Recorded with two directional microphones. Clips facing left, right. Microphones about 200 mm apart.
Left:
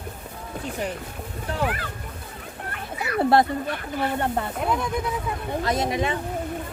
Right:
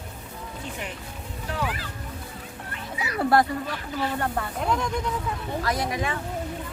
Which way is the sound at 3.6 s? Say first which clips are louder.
Left 2 dB; 55° left (ahead or behind).